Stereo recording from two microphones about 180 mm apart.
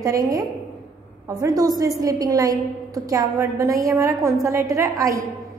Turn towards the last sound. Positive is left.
turn(degrees=-15)  # may be behind; listen again after turning